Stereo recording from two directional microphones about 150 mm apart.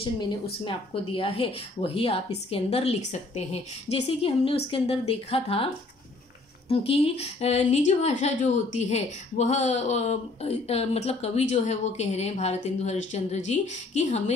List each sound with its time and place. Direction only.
0.0 s speech: 35° left (ahead or behind); by 3.4 s 50° left (ahead or behind)
3.9 s speech: 40° left (ahead or behind)
6.7 s a woman's voice: 40° left (ahead or behind)